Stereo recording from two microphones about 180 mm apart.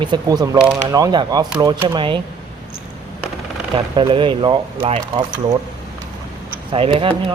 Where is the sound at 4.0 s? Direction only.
25° right (ahead or behind).